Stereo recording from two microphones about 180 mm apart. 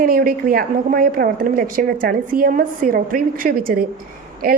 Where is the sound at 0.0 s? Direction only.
50° right (ahead or behind).